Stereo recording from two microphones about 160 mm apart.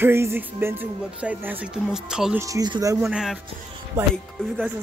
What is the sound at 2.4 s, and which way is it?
Speech, 20° right (ahead or behind).